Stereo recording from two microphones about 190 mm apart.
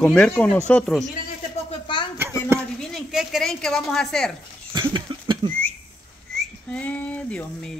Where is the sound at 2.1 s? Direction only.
10° right (ahead or behind).